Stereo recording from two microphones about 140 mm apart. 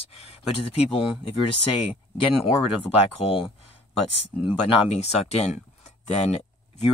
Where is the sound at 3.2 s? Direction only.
45° left (ahead or behind).